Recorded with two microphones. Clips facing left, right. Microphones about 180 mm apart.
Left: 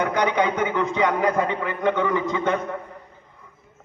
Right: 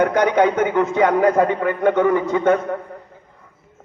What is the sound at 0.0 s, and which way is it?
A man's voice, 55° right (ahead or behind).